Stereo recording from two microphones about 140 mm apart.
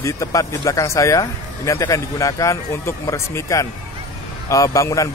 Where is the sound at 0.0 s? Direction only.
25° left (ahead or behind).